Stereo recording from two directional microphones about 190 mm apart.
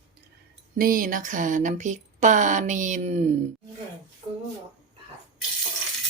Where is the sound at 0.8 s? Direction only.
45° right (ahead or behind).